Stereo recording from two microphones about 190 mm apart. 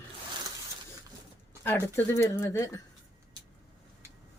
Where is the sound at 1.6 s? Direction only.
10° left (ahead or behind).